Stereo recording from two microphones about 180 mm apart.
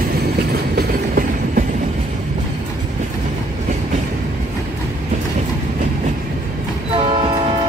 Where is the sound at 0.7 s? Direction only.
55° right (ahead or behind).